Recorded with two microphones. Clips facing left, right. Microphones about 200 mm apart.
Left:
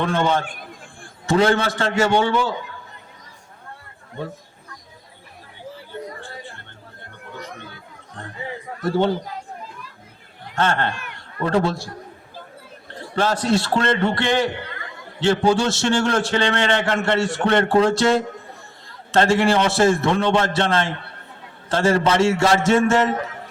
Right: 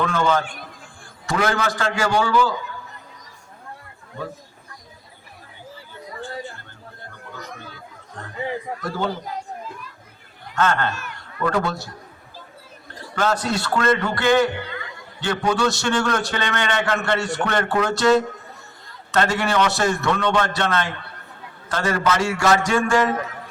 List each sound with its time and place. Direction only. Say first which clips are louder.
0.0 s a man's voice: even; 25° left (ahead or behind)
8.8 s a man's voice: left 9 dB; 30° left (ahead or behind)
10.5 s a man's voice: even; 30° left (ahead or behind)
13.1 s a man's voice: left 3 dB; 30° left (ahead or behind)